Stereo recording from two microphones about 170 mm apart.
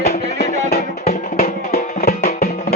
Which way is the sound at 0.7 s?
40° left (ahead or behind).